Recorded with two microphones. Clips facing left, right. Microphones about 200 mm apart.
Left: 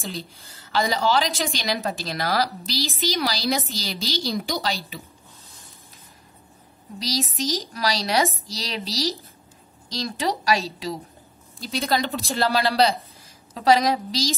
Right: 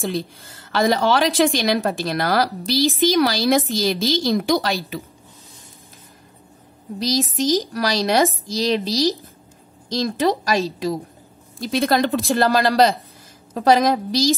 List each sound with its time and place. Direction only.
0.0 s a woman's voice: 55° right (ahead or behind)
7.0 s a woman's voice: 50° right (ahead or behind)
9.9 s a woman's voice: 50° right (ahead or behind)